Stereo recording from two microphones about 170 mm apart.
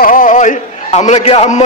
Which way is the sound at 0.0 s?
55° left (ahead or behind).